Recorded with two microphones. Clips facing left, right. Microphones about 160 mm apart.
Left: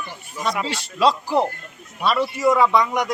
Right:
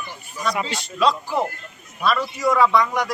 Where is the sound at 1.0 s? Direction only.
30° left (ahead or behind).